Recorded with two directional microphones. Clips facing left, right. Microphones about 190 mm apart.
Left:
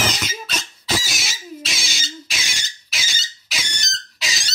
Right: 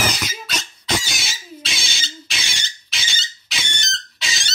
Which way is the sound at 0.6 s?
Centre (ahead or behind).